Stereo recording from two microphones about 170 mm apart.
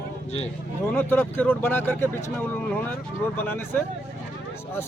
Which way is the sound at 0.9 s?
10° left (ahead or behind).